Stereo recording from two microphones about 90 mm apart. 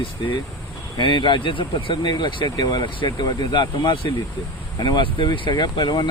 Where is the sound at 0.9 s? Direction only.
60° left (ahead or behind).